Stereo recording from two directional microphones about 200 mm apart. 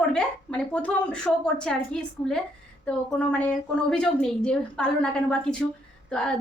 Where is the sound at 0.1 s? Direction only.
5° left (ahead or behind).